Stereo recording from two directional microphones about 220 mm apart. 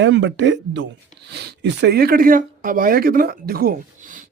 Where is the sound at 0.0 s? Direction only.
55° right (ahead or behind).